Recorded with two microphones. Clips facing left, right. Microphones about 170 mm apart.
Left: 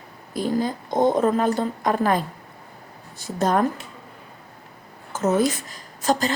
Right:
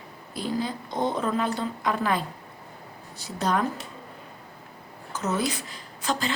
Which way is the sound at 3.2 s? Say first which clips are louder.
Left 5 dB; 50° left (ahead or behind).